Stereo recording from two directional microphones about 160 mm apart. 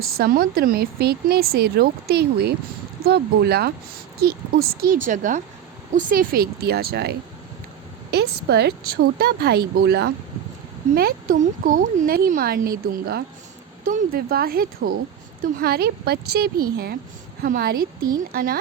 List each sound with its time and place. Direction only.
0.0 s speech: 70° right (ahead or behind); by 3.7 s 90° right
4.2 s speech: 75° right (ahead or behind)
10.9 s speech: 65° right (ahead or behind)